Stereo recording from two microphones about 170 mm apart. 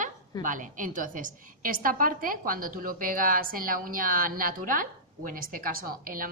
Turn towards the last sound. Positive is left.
turn(degrees=-55)  # may be behind; listen again after turning